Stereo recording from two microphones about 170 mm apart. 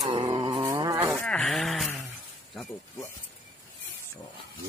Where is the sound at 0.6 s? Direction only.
20° right (ahead or behind).